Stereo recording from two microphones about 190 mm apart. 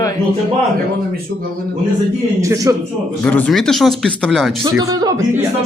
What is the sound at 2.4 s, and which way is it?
Speech, 15° right (ahead or behind).